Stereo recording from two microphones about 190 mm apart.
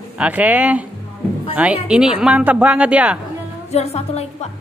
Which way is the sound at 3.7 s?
35° left (ahead or behind).